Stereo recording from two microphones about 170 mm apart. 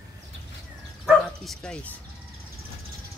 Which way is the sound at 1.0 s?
Centre (ahead or behind).